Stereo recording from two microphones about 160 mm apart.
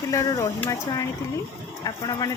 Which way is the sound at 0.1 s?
20° left (ahead or behind).